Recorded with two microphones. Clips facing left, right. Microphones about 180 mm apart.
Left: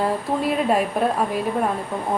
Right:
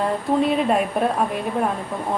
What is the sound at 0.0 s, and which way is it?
Speech, centre (ahead or behind).